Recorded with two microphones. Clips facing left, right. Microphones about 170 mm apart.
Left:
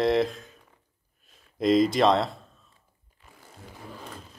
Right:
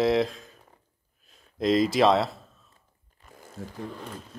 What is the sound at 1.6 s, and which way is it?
Speech, centre (ahead or behind).